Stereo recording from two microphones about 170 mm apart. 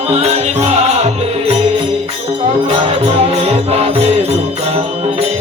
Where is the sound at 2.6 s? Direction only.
40° right (ahead or behind).